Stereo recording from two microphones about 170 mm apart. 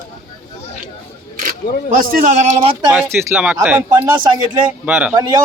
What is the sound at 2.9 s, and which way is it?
Speech, 5° right (ahead or behind).